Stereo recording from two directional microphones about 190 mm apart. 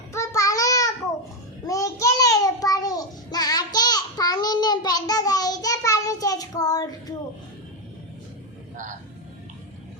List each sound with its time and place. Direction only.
0.1 s child singing: 15° left (ahead or behind)
8.7 s music: 40° right (ahead or behind)